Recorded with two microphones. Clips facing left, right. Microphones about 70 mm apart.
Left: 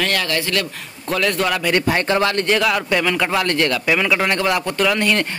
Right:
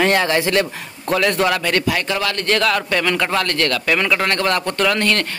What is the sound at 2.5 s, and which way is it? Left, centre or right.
Speech, centre.